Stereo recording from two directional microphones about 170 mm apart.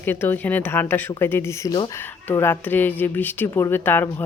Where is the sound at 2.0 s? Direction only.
10° left (ahead or behind).